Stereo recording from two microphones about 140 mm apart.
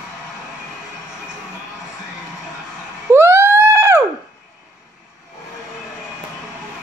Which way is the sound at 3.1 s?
15° right (ahead or behind).